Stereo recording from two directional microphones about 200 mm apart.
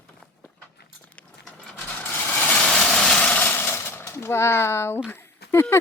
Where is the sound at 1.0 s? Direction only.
5° left (ahead or behind).